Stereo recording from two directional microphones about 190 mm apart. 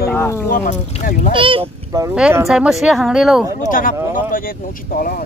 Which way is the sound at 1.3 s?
25° right (ahead or behind).